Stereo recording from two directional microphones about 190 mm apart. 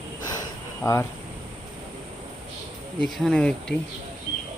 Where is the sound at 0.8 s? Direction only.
15° left (ahead or behind).